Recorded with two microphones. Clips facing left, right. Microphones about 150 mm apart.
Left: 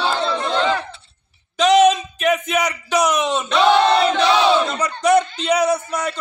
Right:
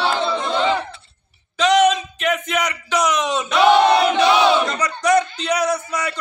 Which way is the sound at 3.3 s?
10° right (ahead or behind).